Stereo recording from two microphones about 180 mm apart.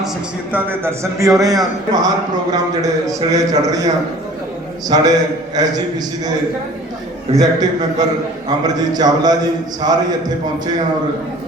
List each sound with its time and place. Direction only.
0.5 s a man's voice: 15° right (ahead or behind)
4.9 s a man's voice: 25° right (ahead or behind)
7.3 s a man's voice: 20° right (ahead or behind)